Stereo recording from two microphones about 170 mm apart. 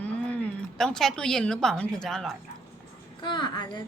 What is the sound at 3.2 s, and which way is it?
Speech, 25° left (ahead or behind).